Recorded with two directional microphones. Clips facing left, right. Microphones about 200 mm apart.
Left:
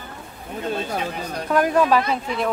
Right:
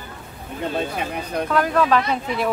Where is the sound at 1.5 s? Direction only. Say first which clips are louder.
Left 2 dB; 10° left (ahead or behind).